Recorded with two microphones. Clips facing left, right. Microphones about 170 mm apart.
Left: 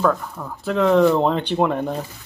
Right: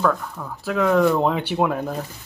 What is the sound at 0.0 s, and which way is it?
Speech, 5° left (ahead or behind).